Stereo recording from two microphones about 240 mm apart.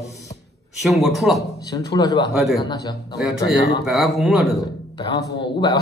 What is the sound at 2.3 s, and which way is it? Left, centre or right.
Speech, centre.